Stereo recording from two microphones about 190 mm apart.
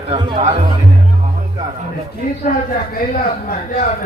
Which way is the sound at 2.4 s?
45° left (ahead or behind).